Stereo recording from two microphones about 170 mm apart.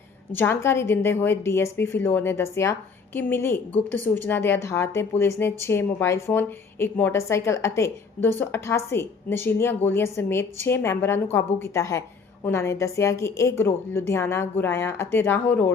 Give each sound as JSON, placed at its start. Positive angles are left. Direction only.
{"t": 0.3, "sound": "a woman's voice", "side_deg": 15}